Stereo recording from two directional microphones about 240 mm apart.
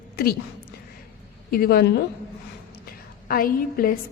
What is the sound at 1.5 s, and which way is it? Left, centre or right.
Speech, left.